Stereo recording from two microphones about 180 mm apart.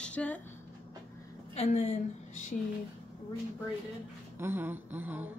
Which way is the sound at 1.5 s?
40° left (ahead or behind).